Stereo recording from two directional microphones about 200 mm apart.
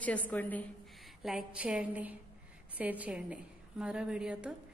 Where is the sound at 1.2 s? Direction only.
5° right (ahead or behind).